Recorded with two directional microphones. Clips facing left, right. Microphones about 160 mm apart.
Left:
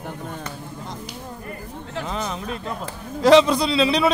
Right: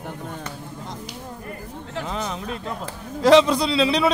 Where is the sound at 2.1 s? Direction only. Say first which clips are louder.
Left 1 dB; 5° right (ahead or behind).